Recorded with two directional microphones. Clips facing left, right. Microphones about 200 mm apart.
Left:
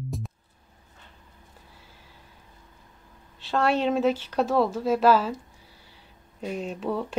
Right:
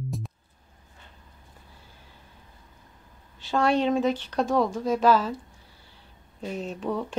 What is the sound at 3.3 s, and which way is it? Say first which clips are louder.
A woman's voice: right 1 dB; centre (ahead or behind).